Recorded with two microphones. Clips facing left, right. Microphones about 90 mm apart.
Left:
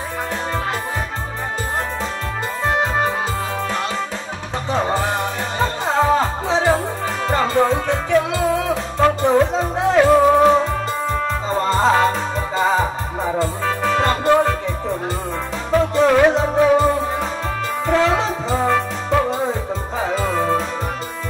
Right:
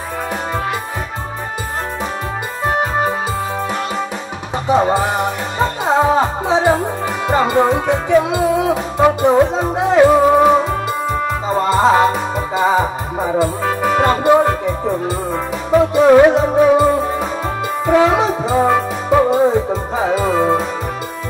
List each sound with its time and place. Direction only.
4.6 s music: 15° right (ahead or behind)